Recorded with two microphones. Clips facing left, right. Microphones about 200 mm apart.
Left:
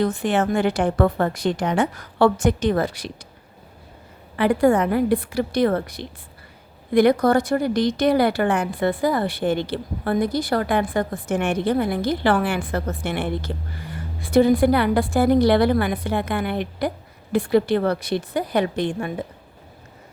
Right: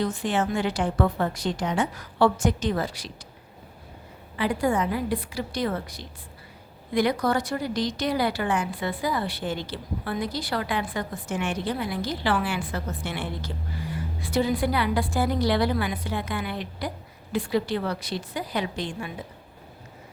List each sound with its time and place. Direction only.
0.0 s a woman's voice: 60° left (ahead or behind)
4.4 s a woman's voice: 60° left (ahead or behind)